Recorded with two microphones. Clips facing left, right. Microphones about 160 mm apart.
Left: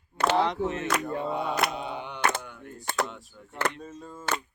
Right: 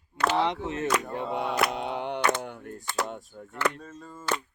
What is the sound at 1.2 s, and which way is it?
Speech, 80° right.